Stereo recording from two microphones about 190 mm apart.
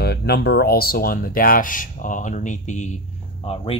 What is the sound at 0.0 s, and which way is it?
Speech, 60° left (ahead or behind).